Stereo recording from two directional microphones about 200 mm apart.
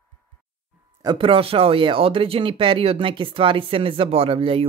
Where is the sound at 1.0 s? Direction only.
25° right (ahead or behind).